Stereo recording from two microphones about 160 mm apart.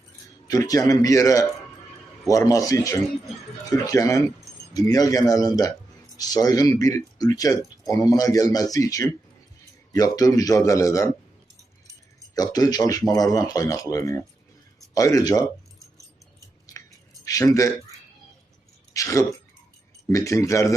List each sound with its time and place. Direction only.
0.4 s speech: 20° left (ahead or behind)
12.3 s speech: 25° left (ahead or behind)
17.2 s a man's voice: 20° left (ahead or behind)
18.9 s speech: 20° left (ahead or behind)